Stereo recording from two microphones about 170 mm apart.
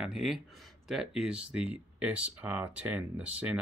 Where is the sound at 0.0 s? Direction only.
Centre (ahead or behind).